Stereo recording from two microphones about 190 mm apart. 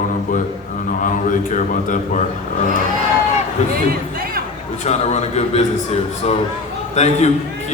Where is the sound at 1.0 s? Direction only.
45° left (ahead or behind).